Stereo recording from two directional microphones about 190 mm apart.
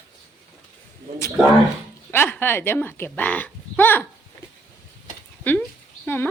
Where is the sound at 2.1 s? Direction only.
10° left (ahead or behind).